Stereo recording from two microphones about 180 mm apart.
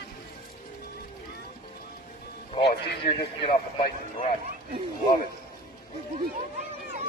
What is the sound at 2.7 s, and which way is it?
Speech, 65° left (ahead or behind).